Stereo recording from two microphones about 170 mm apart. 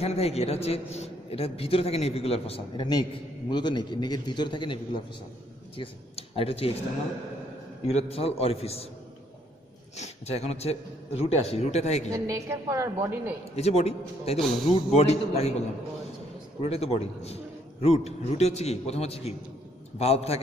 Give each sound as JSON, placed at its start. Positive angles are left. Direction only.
{"t": 0.0, "sound": "a man's voice", "side_deg": 35}
{"t": 7.8, "sound": "a man's voice", "side_deg": 35}
{"t": 9.9, "sound": "a man's voice", "side_deg": 40}
{"t": 12.1, "sound": "a woman's voice", "side_deg": -20}
{"t": 13.6, "sound": "a man's voice", "side_deg": 40}
{"t": 16.6, "sound": "a man's voice", "side_deg": 35}